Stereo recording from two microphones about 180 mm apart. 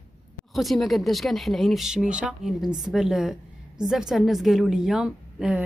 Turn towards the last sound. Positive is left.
turn(degrees=-5)  # may be behind; listen again after turning